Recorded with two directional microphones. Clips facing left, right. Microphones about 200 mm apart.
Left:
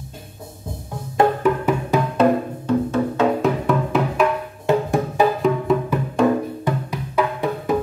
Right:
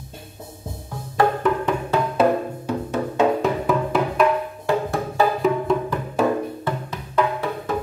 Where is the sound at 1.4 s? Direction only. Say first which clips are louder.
Left 2 dB; 10° left (ahead or behind).